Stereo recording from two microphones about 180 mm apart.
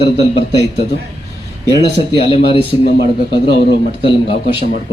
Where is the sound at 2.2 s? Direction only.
30° left (ahead or behind).